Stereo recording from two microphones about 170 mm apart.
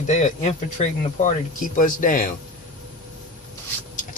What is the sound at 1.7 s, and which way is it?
Speech, 50° left (ahead or behind).